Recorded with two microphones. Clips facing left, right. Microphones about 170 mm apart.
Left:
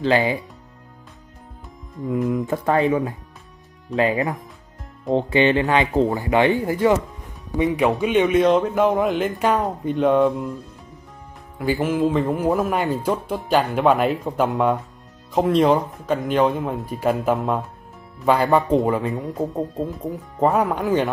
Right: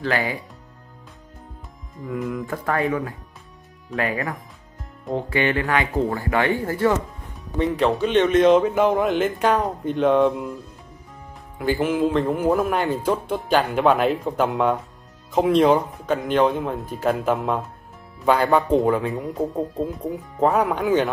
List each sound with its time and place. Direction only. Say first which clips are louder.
0.0 s speech: left 5 dB; 20° left (ahead or behind)
2.2 s speech: left 4 dB; 20° left (ahead or behind); by 10.5 s centre (ahead or behind)
11.5 s speech: even; centre (ahead or behind)